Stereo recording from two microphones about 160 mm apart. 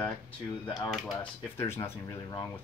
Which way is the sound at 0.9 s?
5° right (ahead or behind).